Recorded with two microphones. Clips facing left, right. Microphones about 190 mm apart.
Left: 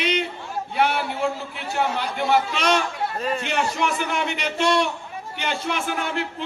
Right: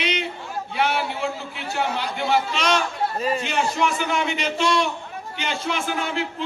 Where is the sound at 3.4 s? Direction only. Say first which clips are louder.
Right 1 dB; 60° left (ahead or behind).